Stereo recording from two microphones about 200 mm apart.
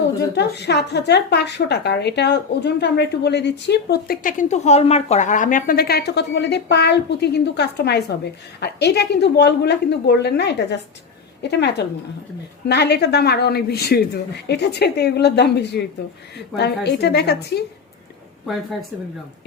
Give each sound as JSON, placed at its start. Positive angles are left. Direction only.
{"t": 0.3, "sound": "a woman's voice", "side_deg": 55}